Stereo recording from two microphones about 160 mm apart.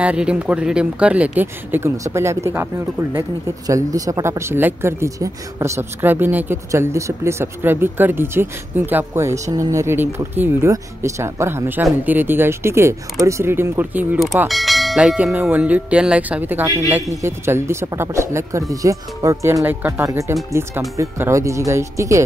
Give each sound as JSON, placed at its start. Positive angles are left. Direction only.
{"t": 0.0, "sound": "speech", "side_deg": -5}
{"t": 14.5, "sound": "speech", "side_deg": 0}